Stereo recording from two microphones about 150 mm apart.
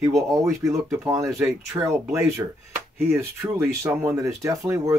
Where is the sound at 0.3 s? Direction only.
20° right (ahead or behind).